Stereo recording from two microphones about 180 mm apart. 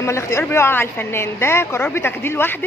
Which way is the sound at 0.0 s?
15° left (ahead or behind).